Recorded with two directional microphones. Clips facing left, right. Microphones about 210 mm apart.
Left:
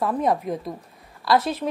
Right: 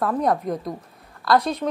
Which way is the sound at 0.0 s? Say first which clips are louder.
Right 1 dB; centre (ahead or behind).